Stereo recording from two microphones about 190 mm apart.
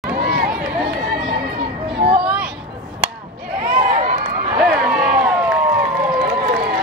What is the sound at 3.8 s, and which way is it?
Run, 50° right (ahead or behind).